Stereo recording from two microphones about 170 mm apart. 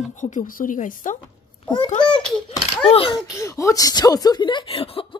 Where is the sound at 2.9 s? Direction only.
30° left (ahead or behind).